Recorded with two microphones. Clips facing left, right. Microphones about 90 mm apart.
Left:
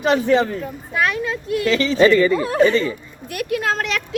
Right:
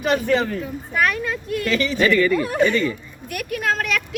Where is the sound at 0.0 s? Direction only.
25° left (ahead or behind).